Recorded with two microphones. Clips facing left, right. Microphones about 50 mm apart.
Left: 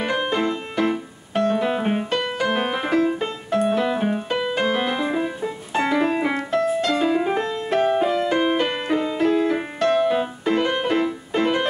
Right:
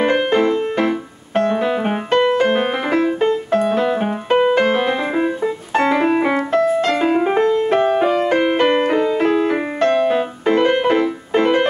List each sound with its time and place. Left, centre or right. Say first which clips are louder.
0.0 s piano: right 7 dB; right
2.0 s music: right 8 dB; right